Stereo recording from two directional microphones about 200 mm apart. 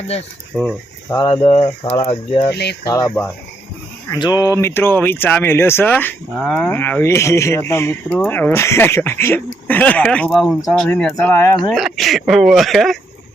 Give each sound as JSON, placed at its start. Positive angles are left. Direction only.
{"t": 0.5, "sound": "speech", "side_deg": 0}
{"t": 1.1, "sound": "speech", "side_deg": 25}
{"t": 2.5, "sound": "speech", "side_deg": 55}
{"t": 2.8, "sound": "speech", "side_deg": 20}
{"t": 4.1, "sound": "speech", "side_deg": 20}
{"t": 11.7, "sound": "speech", "side_deg": 0}